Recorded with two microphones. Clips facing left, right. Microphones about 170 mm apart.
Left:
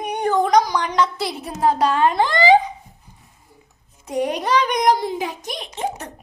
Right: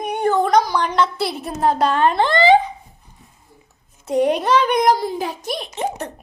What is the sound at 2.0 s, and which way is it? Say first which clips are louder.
Speech: right 1 dB; 10° left (ahead or behind).